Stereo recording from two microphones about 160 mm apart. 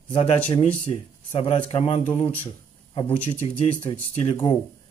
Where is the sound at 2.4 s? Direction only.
35° left (ahead or behind).